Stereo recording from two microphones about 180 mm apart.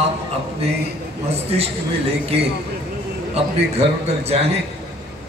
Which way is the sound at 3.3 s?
35° right (ahead or behind).